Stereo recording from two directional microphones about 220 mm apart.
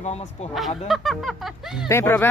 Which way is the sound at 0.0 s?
30° left (ahead or behind).